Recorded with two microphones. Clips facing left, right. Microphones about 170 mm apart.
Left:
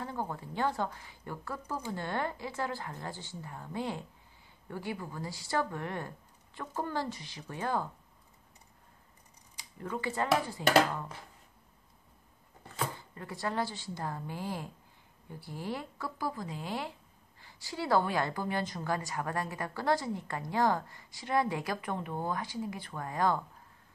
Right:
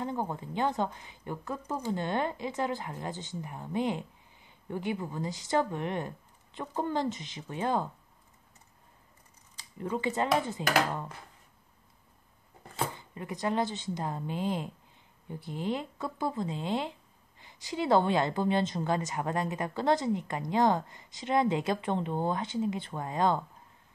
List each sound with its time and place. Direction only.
0.0 s a woman's voice: 20° right (ahead or behind)
9.8 s a woman's voice: 20° right (ahead or behind)
12.7 s a woman's voice: 20° right (ahead or behind)